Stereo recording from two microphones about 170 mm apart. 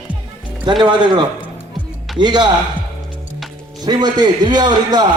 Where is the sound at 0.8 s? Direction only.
25° right (ahead or behind).